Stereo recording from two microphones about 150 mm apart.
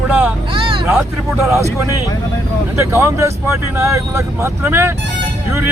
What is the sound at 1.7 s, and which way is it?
Speech, 20° right (ahead or behind).